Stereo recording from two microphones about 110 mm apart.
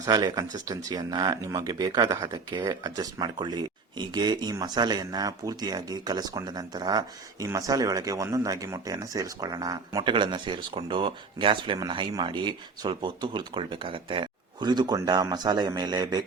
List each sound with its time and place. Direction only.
0.0 s speech: 35° right (ahead or behind)